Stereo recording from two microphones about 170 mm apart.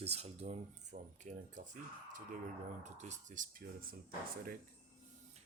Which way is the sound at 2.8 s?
45° right (ahead or behind).